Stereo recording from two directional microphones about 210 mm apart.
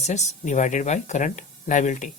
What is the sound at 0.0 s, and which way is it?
Speech, 35° left (ahead or behind).